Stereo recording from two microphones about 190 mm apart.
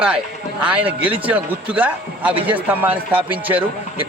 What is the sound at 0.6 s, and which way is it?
Speech, 10° right (ahead or behind).